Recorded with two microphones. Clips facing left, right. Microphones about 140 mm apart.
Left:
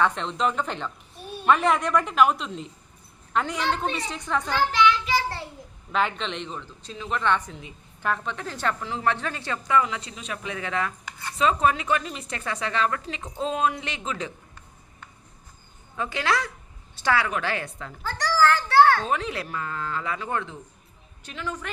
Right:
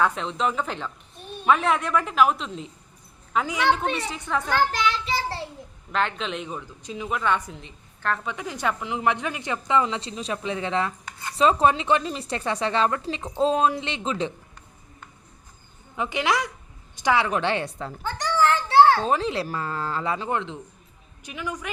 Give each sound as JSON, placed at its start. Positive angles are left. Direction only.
{"t": 0.0, "sound": "a child's voice", "side_deg": -5}
{"t": 3.6, "sound": "a woman's voice", "side_deg": -65}
{"t": 4.1, "sound": "a child's voice", "side_deg": -5}
{"t": 4.4, "sound": "child singing", "side_deg": -45}
{"t": 5.9, "sound": "a child's voice", "side_deg": 0}
{"t": 7.6, "sound": "a woman's voice", "side_deg": 5}
{"t": 8.2, "sound": "speech", "side_deg": -10}
{"t": 16.0, "sound": "a woman's voice", "side_deg": -20}
{"t": 17.2, "sound": "speech", "side_deg": -30}
{"t": 18.0, "sound": "a woman's voice", "side_deg": -20}